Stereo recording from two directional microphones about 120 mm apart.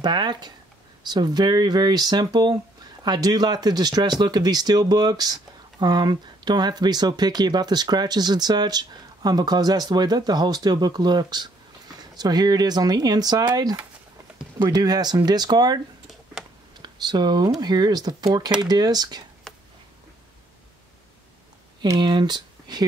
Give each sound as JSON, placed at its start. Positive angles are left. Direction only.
{"t": 0.0, "sound": "speech", "side_deg": -35}
{"t": 16.8, "sound": "speech", "side_deg": -35}
{"t": 19.5, "sound": "a sound", "side_deg": 5}
{"t": 21.8, "sound": "speech", "side_deg": -35}